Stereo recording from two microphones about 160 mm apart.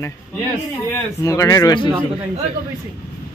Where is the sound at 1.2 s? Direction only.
20° left (ahead or behind).